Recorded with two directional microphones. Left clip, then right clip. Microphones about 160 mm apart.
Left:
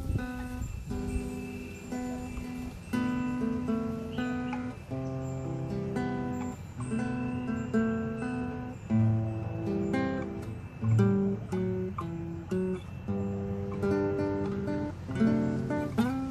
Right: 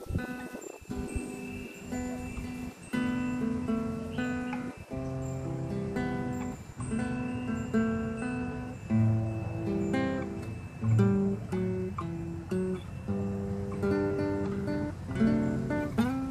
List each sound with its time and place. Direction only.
2.9 s music: 15° left (ahead or behind)
5.7 s music: 15° left (ahead or behind)
9.7 s music: 15° left (ahead or behind)
11.0 s guitar: 15° left (ahead or behind)
13.7 s music: 15° left (ahead or behind)